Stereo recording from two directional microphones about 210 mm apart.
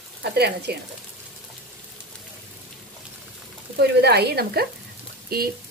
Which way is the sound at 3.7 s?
50° right (ahead or behind).